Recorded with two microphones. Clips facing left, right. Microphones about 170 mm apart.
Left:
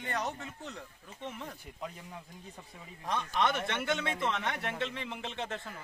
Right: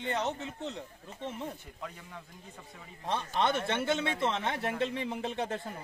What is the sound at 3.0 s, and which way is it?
Speech, 30° right (ahead or behind).